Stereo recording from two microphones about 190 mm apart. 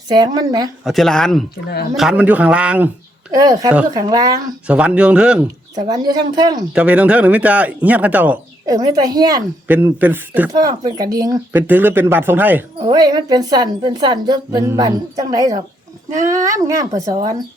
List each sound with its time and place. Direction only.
0.1 s a woman's voice: 20° right (ahead or behind)
0.9 s a woman's voice: centre (ahead or behind); by 4.5 s 20° right (ahead or behind)
4.6 s speech: 5° right (ahead or behind)
5.9 s a woman's voice: 20° right (ahead or behind)
6.7 s speech: 5° right (ahead or behind)
8.6 s a woman's voice: 20° right (ahead or behind)
9.6 s speech: 10° right (ahead or behind)
10.5 s a woman's voice: 20° right (ahead or behind)
12.8 s a woman's voice: 20° right (ahead or behind)